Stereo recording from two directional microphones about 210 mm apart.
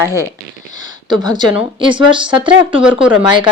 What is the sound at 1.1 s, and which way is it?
Speech, 20° right (ahead or behind).